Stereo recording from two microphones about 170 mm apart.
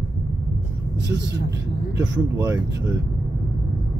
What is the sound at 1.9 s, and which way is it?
Speech, 20° right (ahead or behind).